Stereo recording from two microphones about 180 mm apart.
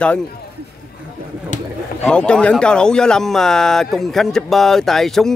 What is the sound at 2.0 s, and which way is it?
Speech, 5° left (ahead or behind).